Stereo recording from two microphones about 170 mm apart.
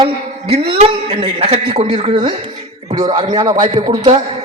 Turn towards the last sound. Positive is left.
turn(degrees=-30)  # may be behind; listen again after turning